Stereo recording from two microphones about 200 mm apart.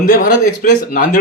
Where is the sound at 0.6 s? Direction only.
45° left (ahead or behind).